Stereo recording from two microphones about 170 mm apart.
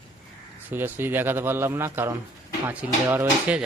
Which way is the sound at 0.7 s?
10° right (ahead or behind).